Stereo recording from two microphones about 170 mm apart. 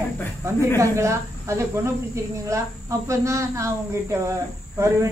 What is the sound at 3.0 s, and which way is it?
Speech, 20° right (ahead or behind).